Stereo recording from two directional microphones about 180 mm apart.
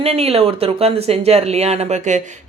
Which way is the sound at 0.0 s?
35° right (ahead or behind).